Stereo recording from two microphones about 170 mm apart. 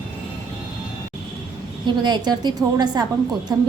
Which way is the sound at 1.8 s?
25° right (ahead or behind).